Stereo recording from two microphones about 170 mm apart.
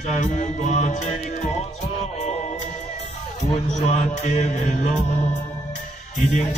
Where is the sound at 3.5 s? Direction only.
40° left (ahead or behind).